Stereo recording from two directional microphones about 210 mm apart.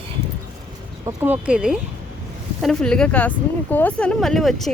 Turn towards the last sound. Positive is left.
turn(degrees=0)  # may be behind; listen again after turning